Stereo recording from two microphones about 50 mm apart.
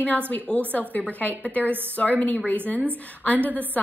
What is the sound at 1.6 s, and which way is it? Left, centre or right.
Speech, right.